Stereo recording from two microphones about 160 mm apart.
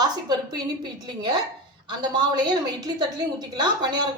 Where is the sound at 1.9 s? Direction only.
30° right (ahead or behind).